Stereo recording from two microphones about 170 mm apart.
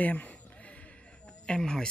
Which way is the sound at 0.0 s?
10° left (ahead or behind).